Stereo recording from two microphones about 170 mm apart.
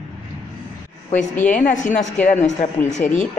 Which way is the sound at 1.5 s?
50° left (ahead or behind).